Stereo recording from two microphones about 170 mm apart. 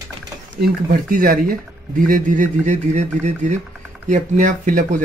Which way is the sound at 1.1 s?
55° right (ahead or behind).